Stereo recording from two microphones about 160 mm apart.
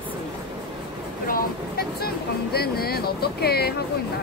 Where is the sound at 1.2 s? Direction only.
70° left (ahead or behind).